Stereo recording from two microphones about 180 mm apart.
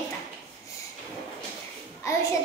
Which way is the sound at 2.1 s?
15° left (ahead or behind).